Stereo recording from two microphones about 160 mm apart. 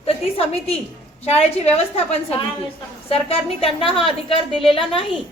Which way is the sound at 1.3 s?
40° left (ahead or behind).